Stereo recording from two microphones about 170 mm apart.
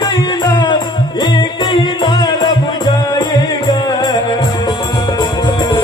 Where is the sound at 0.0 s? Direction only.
25° left (ahead or behind).